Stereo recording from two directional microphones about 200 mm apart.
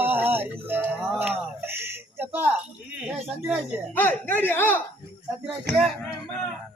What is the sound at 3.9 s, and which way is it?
Speech, 10° left (ahead or behind).